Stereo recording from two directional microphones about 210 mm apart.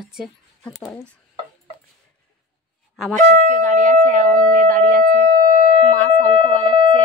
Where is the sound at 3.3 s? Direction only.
40° right (ahead or behind).